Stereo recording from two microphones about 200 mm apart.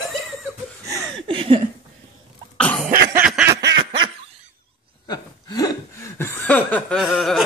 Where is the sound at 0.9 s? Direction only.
25° right (ahead or behind).